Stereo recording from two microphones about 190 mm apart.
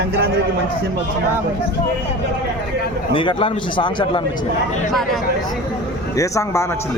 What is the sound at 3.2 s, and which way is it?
A man's voice, 25° left (ahead or behind).